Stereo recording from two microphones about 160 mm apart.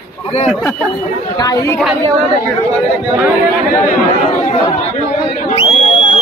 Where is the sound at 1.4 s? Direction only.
20° left (ahead or behind).